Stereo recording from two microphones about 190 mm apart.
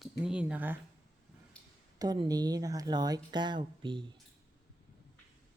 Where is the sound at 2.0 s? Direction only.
20° right (ahead or behind).